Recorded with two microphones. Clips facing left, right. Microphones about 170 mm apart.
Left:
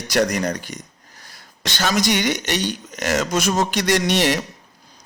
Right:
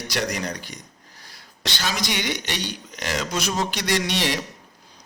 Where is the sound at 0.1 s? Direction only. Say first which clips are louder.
Left 8 dB; 45° left (ahead or behind).